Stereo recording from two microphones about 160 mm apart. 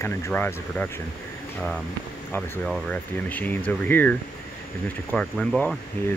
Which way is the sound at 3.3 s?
10° left (ahead or behind).